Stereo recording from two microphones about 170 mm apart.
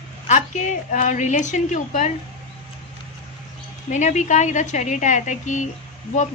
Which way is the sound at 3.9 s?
45° left (ahead or behind).